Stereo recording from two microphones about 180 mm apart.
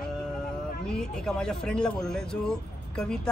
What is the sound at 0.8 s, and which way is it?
Speech, 5° left (ahead or behind).